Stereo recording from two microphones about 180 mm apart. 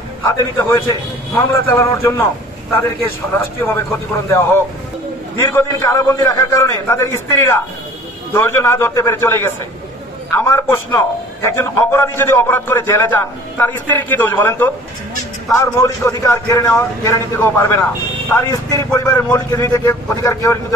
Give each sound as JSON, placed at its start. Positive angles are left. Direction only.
{"t": 0.3, "sound": "a man's voice", "side_deg": 15}
{"t": 5.5, "sound": "a man's voice", "side_deg": 15}